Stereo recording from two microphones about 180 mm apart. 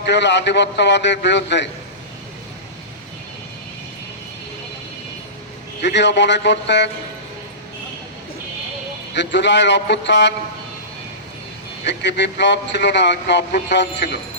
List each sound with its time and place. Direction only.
0.0 s speech: 75° left (ahead or behind)
5.8 s speech: 75° left (ahead or behind)
9.1 s speech: 75° left (ahead or behind)
11.9 s speech: 75° left (ahead or behind)